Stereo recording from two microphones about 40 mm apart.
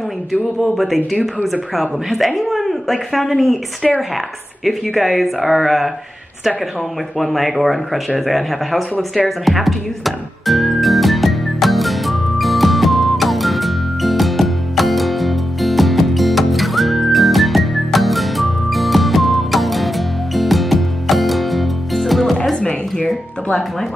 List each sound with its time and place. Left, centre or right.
0.3 s speech: centre
7.2 s speech: centre
9.1 s music: centre
22.6 s music: left